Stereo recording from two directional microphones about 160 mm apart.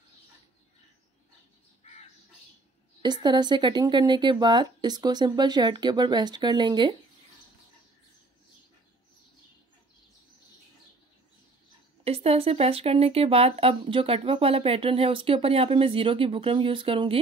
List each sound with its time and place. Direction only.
3.0 s speech: 30° right (ahead or behind)
12.0 s speech: 40° right (ahead or behind)